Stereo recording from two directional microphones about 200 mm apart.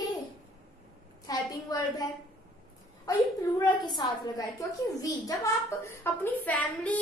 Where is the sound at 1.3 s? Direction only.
20° left (ahead or behind).